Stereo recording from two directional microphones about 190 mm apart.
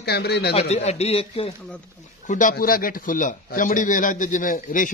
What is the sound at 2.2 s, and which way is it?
Speech, 45° left (ahead or behind).